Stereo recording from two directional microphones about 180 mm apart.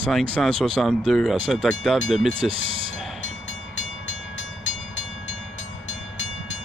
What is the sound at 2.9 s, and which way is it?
Train, centre (ahead or behind).